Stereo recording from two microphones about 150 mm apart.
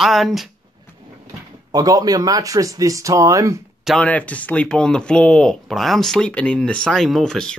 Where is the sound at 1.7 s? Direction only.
25° right (ahead or behind).